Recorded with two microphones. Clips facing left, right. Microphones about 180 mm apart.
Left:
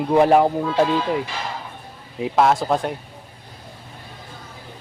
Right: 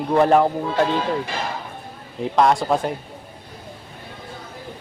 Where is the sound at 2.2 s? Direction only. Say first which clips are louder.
Even; 5° left (ahead or behind).